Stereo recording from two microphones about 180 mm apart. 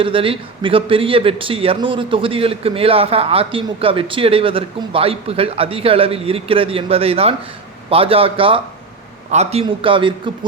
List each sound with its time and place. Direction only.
0.0 s a man's voice: 30° right (ahead or behind)